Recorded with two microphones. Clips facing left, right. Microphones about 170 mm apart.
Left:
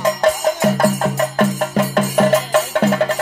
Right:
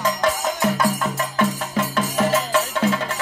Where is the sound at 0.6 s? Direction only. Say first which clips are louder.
Left 5 dB; 45° left (ahead or behind).